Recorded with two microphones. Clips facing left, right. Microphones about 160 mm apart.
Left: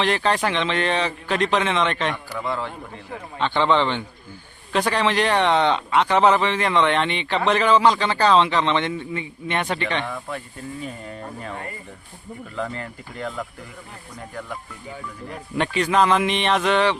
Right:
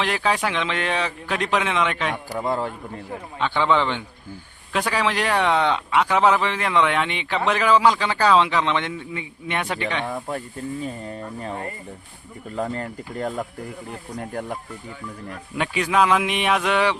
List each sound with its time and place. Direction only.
0.0 s speech: 5° right (ahead or behind)
2.3 s a man's voice: 40° right (ahead or behind)
3.3 s a man's voice: 5° right (ahead or behind)
10.1 s speech: 35° right (ahead or behind)
15.5 s a man's voice: 5° right (ahead or behind)